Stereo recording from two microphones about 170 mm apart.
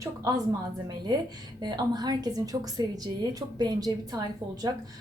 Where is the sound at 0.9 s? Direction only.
25° right (ahead or behind).